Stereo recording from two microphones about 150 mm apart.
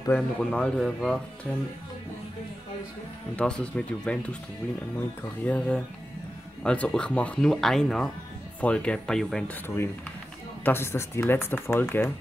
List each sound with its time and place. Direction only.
0.1 s speech: 5° left (ahead or behind)
3.3 s speech: 5° left (ahead or behind)
5.4 s speech: 10° left (ahead or behind)
10.6 s speech: 15° left (ahead or behind)